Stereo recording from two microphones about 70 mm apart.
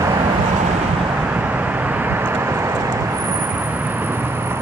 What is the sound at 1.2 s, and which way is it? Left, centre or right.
Vehicle, right.